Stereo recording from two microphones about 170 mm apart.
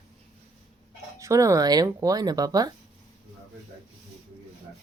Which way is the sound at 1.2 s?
20° right (ahead or behind).